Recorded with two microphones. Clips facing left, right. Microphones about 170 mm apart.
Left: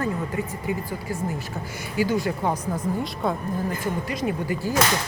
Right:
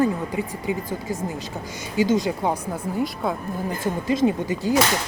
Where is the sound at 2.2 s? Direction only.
15° right (ahead or behind).